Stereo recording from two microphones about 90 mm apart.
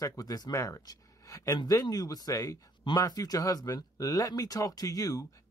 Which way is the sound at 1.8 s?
45° left (ahead or behind).